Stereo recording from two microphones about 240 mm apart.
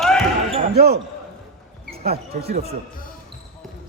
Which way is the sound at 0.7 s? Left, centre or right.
Right.